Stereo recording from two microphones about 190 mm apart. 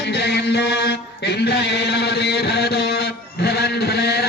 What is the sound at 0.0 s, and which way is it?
Mantra, 60° left (ahead or behind).